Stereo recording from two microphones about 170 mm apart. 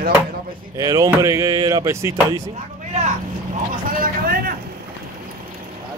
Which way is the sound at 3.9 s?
60° right (ahead or behind).